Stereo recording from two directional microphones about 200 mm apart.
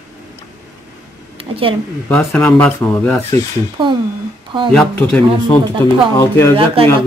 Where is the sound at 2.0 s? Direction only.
10° left (ahead or behind).